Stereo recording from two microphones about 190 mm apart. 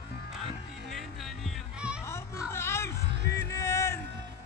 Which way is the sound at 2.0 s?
15° left (ahead or behind).